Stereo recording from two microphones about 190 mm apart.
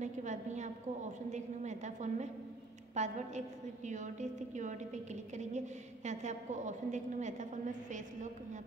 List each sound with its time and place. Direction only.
0.0 s a woman's voice: 40° right (ahead or behind)